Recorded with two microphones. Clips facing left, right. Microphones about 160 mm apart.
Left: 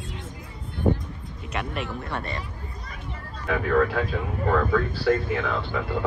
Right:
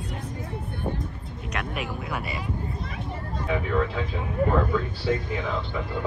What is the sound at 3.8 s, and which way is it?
Speech, 65° left (ahead or behind).